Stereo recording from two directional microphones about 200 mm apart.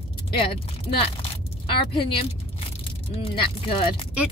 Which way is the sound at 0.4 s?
30° left (ahead or behind).